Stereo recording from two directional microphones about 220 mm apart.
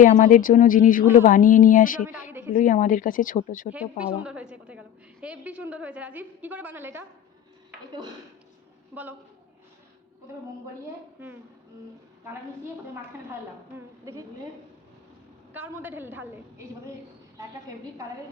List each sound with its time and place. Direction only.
0.0 s speech: 35° left (ahead or behind)
2.0 s a woman's voice: 10° right (ahead or behind)
2.3 s a sound: 10° right (ahead or behind)
2.6 s speech: 35° left (ahead or behind)
3.7 s a woman's voice: 5° right (ahead or behind)
13.7 s a woman's voice: 15° right (ahead or behind)
15.5 s a woman's voice: 10° right (ahead or behind)